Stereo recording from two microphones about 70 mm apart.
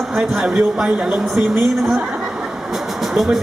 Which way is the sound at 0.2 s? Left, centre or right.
Centre.